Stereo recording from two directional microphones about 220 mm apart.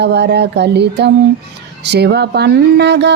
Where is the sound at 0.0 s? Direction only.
50° right (ahead or behind).